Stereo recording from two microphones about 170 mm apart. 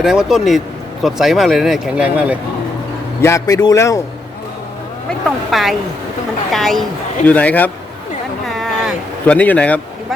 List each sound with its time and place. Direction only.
0.0 s speech: 5° right (ahead or behind)
3.2 s speech: 15° left (ahead or behind)
5.5 s speech: centre (ahead or behind)
8.4 s a sound: centre (ahead or behind)
9.2 s speech: 10° left (ahead or behind)